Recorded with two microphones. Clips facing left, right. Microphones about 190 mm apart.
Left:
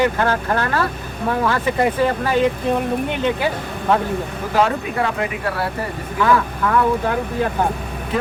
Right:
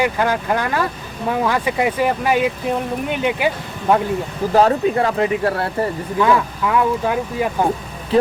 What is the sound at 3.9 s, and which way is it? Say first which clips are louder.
Speech: right 2 dB; 15° right (ahead or behind).